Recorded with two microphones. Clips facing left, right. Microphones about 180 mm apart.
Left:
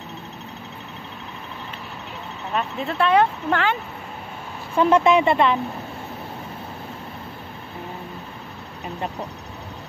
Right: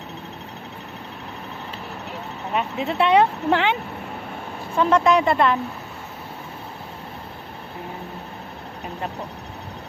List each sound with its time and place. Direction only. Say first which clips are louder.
2.5 s speech: right 1 dB; 15° right (ahead or behind)
4.8 s speech: left 1 dB; 5° left (ahead or behind)